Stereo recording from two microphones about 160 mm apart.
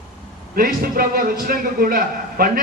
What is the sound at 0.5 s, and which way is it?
Speech, 65° right (ahead or behind).